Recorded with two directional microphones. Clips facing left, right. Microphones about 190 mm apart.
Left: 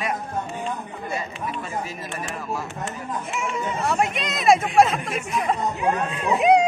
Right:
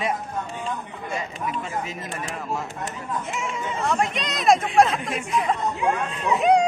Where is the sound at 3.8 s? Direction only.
5° left (ahead or behind).